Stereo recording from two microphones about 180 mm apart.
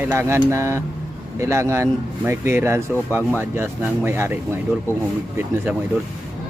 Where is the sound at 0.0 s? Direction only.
15° right (ahead or behind).